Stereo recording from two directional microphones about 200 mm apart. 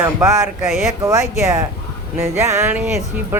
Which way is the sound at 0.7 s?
Centre (ahead or behind).